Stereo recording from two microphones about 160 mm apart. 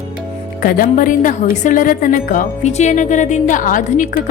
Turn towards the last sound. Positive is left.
turn(degrees=55)  # may be behind; listen again after turning